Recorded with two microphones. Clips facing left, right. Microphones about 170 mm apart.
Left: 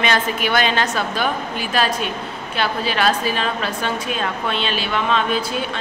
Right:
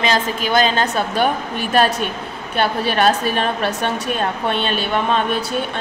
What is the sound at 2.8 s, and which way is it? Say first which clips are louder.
A woman's voice: right 2 dB; 60° right (ahead or behind).